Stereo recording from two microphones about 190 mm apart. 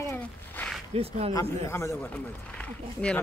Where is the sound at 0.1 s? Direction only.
10° left (ahead or behind).